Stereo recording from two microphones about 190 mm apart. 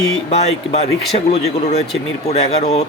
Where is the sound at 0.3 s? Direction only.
30° left (ahead or behind).